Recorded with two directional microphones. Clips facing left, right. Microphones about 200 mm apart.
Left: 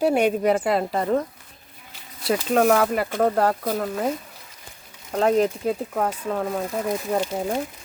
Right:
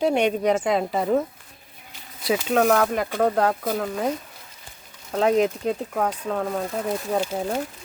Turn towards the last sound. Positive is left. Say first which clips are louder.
# left 1 dB
turn(degrees=-5)  # may be behind; listen again after turning